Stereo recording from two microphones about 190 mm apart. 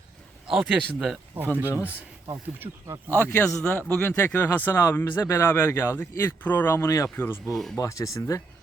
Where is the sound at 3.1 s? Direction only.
10° left (ahead or behind).